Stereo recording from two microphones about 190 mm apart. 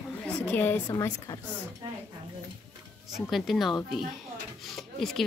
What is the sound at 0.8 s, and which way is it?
Speech, 20° left (ahead or behind).